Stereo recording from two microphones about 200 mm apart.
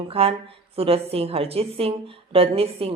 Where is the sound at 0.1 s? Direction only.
30° right (ahead or behind).